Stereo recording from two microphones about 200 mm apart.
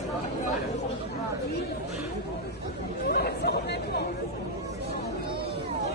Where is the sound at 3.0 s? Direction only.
55° left (ahead or behind).